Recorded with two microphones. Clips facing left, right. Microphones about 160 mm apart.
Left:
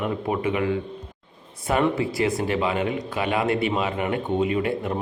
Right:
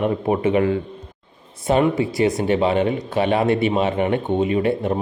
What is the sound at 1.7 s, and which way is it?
A man's voice, 25° right (ahead or behind).